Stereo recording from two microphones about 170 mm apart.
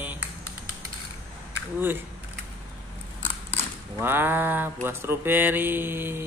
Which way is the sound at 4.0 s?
10° right (ahead or behind).